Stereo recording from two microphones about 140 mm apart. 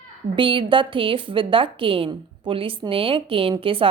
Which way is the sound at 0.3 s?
35° right (ahead or behind).